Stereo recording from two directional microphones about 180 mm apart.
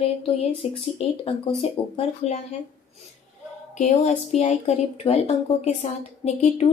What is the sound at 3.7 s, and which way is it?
Speech, 35° left (ahead or behind).